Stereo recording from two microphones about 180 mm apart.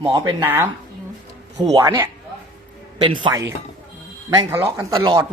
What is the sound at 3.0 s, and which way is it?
Speech, 25° right (ahead or behind).